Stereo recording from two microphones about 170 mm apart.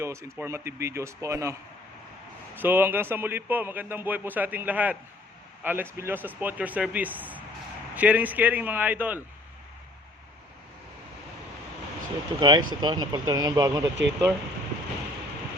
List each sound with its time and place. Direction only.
0.0 s speech: 15° right (ahead or behind)
2.6 s speech: 10° right (ahead or behind)
12.4 s speech: 25° right (ahead or behind)